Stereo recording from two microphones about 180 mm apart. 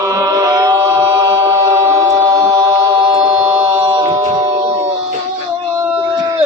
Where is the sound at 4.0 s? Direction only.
20° right (ahead or behind).